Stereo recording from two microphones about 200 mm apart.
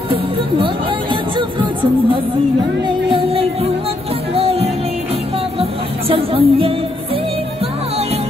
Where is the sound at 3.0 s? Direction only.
30° right (ahead or behind).